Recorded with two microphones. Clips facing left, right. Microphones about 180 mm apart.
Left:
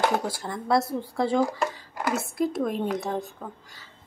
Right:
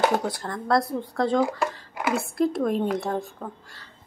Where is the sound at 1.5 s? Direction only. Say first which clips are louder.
Right 1 dB; 5° right (ahead or behind).